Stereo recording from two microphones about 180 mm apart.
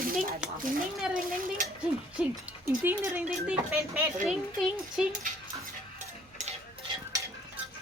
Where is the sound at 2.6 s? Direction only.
15° right (ahead or behind).